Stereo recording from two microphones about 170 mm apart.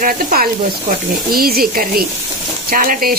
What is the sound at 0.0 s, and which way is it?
Speech, 55° right (ahead or behind).